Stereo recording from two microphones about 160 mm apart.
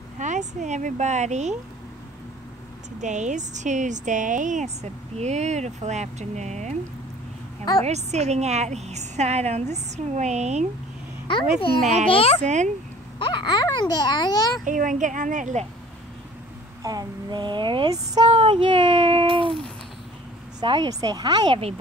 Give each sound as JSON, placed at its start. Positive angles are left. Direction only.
{"t": 0.2, "sound": "a woman's voice", "side_deg": -50}
{"t": 3.0, "sound": "a woman's voice", "side_deg": -50}
{"t": 7.8, "sound": "a woman's voice", "side_deg": -45}
{"t": 11.8, "sound": "a woman's voice", "side_deg": -50}
{"t": 12.1, "sound": "speech", "side_deg": 35}
{"t": 12.4, "sound": "a woman's voice", "side_deg": -50}
{"t": 13.2, "sound": "speech", "side_deg": 30}
{"t": 14.6, "sound": "a woman's voice", "side_deg": -55}
{"t": 16.8, "sound": "speech", "side_deg": -25}
{"t": 18.2, "sound": "a child's voice", "side_deg": -35}
{"t": 20.6, "sound": "speech", "side_deg": -30}